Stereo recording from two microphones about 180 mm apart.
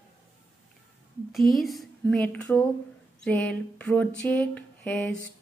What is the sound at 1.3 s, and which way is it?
A woman's voice, centre (ahead or behind).